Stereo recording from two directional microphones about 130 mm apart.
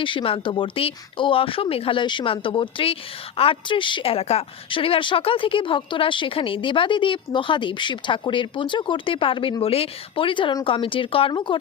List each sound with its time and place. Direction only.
0.0 s speech: 40° left (ahead or behind)